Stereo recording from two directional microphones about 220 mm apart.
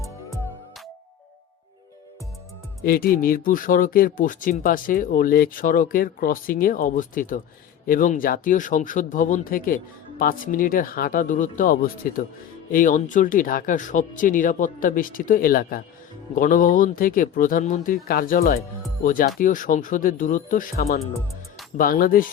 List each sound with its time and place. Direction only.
2.8 s speech: 40° left (ahead or behind)